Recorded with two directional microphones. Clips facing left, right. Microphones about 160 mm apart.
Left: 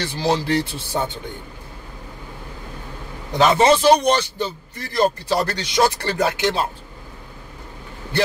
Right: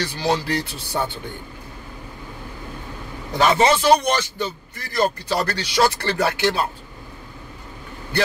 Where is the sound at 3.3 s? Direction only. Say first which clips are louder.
Left 2 dB; 25° left (ahead or behind).